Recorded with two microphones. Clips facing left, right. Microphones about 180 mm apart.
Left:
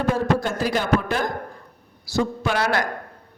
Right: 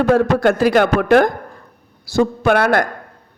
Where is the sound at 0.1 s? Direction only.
65° right (ahead or behind).